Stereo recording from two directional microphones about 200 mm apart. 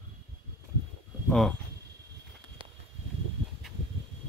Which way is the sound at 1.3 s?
5° left (ahead or behind).